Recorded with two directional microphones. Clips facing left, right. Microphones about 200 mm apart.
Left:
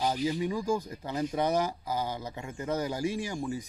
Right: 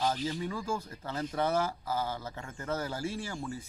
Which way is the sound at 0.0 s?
15° left (ahead or behind).